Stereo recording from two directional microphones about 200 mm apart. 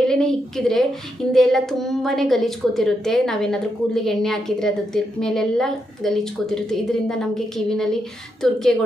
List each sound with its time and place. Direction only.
0.0 s a woman's voice: 5° left (ahead or behind)